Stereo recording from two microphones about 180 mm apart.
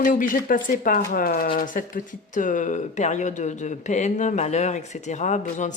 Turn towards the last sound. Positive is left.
turn(degrees=40)  # may be behind; listen again after turning